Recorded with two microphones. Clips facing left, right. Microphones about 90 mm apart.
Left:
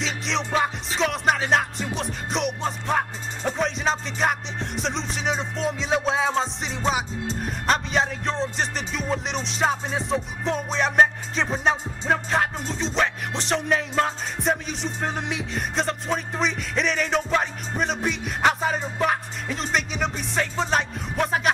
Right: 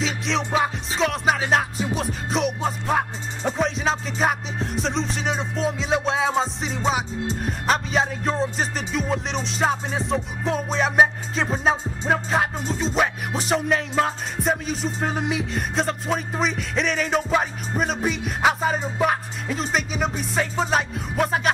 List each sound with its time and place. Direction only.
0.0 s music: centre (ahead or behind)